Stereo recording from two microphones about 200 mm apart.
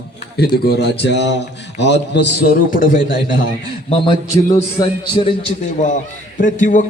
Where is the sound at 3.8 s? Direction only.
25° left (ahead or behind).